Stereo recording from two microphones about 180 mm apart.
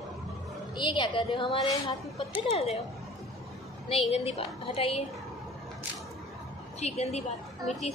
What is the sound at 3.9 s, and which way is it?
A woman's voice, 35° left (ahead or behind).